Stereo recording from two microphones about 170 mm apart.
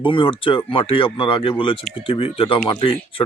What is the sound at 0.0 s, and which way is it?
Speech, 30° left (ahead or behind).